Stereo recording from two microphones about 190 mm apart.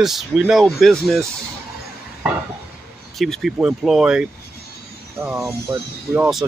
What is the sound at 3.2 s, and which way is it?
Speech, centre (ahead or behind).